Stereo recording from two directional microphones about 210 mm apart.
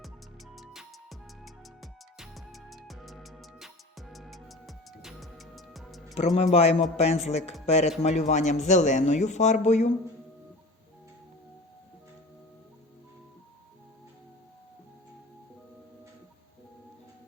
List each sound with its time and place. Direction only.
0.5 s music: centre (ahead or behind)
6.1 s a man's voice: 30° left (ahead or behind)